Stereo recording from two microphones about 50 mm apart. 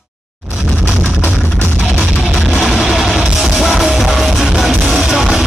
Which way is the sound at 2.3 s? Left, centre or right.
Centre.